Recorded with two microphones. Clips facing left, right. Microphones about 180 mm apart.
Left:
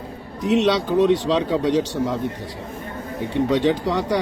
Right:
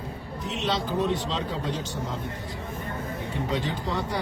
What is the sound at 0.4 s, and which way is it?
Speech, 75° left (ahead or behind).